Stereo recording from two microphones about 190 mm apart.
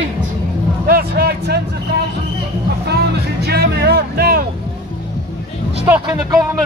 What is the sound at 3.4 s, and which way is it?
Speech, 60° right (ahead or behind).